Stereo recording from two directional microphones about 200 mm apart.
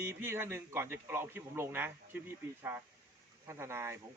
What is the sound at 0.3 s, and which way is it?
A man's voice, 15° right (ahead or behind).